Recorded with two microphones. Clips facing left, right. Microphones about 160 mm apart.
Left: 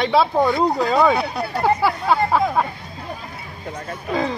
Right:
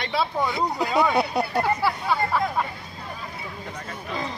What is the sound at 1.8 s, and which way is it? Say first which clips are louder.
Speech: left 5 dB; 85° left.